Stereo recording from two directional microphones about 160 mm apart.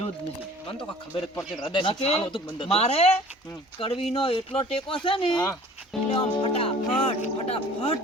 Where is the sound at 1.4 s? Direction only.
25° left (ahead or behind).